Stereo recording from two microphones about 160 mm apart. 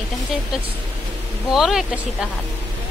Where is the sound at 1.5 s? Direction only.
Centre (ahead or behind).